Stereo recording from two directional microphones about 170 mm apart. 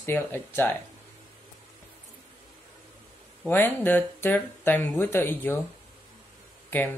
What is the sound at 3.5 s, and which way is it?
Speech, 10° left (ahead or behind).